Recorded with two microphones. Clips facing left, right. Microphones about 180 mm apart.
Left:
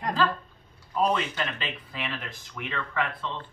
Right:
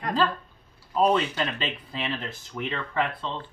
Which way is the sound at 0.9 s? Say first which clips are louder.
Right 4 dB; 30° right (ahead or behind).